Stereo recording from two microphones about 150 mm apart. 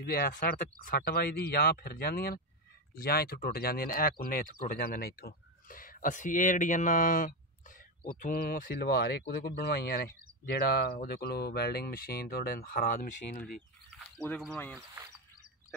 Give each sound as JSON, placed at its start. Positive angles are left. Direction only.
{"t": 0.0, "sound": "speech", "side_deg": 90}
{"t": 8.1, "sound": "speech", "side_deg": 80}
{"t": 10.5, "sound": "speech", "side_deg": 80}